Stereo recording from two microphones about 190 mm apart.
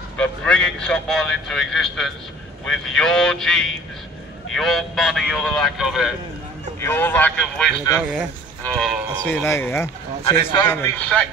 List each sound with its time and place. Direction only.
0.2 s a man's voice: 5° left (ahead or behind)
6.8 s speech: 10° left (ahead or behind)
10.4 s a man's voice: 25° left (ahead or behind)
10.7 s speech: 10° left (ahead or behind)